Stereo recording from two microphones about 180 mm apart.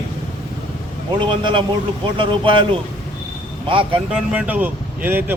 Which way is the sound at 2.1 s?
30° right (ahead or behind).